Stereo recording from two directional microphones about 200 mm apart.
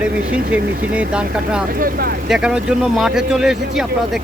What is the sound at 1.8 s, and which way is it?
Speech, 50° right (ahead or behind).